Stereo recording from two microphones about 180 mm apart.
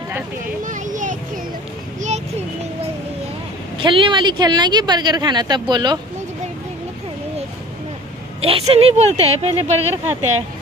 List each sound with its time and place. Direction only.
0.7 s a sound: 45° right (ahead or behind)
2.0 s children playing: 40° right (ahead or behind)
3.7 s speech: 30° right (ahead or behind)
8.4 s speech: 35° right (ahead or behind)